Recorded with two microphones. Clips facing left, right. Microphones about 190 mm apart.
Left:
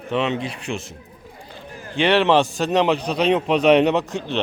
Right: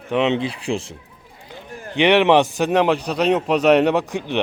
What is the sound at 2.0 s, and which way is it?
A man's voice, 15° right (ahead or behind).